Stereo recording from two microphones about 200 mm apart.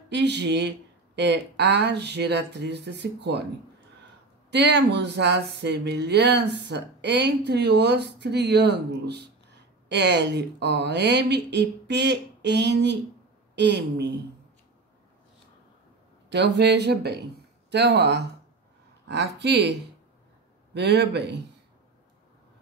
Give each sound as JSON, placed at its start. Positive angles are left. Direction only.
{"t": 0.1, "sound": "speech", "side_deg": -60}
{"t": 4.5, "sound": "speech", "side_deg": -60}
{"t": 16.3, "sound": "speech", "side_deg": -60}
{"t": 20.7, "sound": "speech", "side_deg": -55}